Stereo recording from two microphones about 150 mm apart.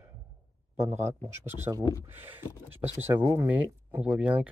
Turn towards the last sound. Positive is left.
turn(degrees=-10)  # may be behind; listen again after turning